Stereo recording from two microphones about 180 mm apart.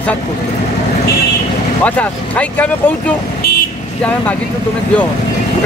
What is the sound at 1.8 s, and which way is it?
Speech, 10° left (ahead or behind).